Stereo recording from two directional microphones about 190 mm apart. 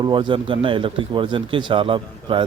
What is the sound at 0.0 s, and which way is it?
Speech, 25° right (ahead or behind).